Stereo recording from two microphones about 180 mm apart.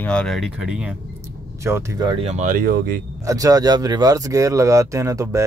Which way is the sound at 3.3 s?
20° right (ahead or behind).